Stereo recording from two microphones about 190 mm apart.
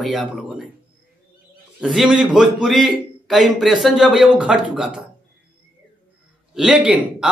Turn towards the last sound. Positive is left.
turn(degrees=-5)  # may be behind; listen again after turning